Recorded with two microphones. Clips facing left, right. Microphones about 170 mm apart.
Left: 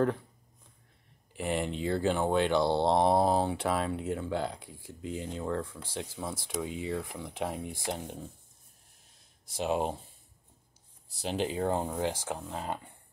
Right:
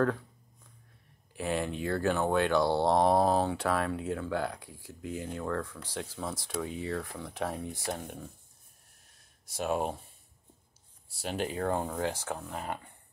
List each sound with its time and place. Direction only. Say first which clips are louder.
1.3 s speech: even; 20° left (ahead or behind)
9.6 s speech: left 1 dB; 20° left (ahead or behind)
11.1 s speech: left 2 dB; 20° left (ahead or behind)